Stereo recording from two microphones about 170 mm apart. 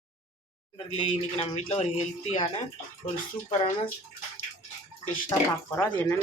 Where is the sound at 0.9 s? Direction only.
40° left (ahead or behind).